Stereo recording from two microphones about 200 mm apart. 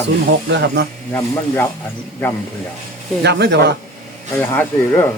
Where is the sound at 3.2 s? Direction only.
55° right (ahead or behind).